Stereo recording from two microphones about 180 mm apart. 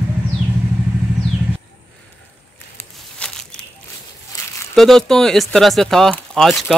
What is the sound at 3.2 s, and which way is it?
Crushing, 5° left (ahead or behind).